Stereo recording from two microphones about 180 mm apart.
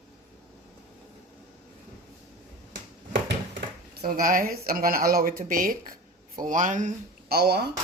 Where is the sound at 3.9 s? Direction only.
55° right (ahead or behind).